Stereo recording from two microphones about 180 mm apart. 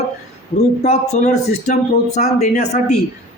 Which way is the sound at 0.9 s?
40° left (ahead or behind).